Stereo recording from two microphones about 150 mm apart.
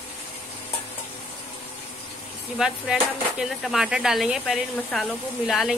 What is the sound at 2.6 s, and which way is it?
Speech, 5° right (ahead or behind).